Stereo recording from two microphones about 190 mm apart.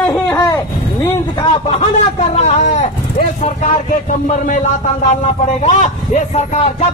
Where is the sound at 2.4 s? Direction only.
35° left (ahead or behind).